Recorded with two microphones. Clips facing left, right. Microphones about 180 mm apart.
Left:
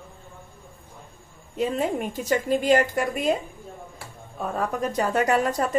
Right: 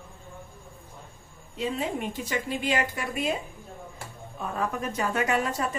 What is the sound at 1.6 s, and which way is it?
A woman's voice, 45° left (ahead or behind).